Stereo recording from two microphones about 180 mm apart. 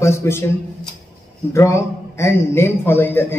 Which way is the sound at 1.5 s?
15° left (ahead or behind).